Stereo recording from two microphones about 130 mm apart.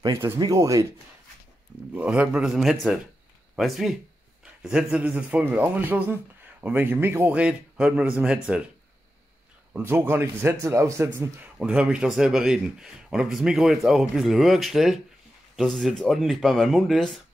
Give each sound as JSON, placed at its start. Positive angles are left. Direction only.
{"t": 0.4, "sound": "speech", "side_deg": -25}
{"t": 2.0, "sound": "a man's voice", "side_deg": -10}
{"t": 9.8, "sound": "a man's voice", "side_deg": -20}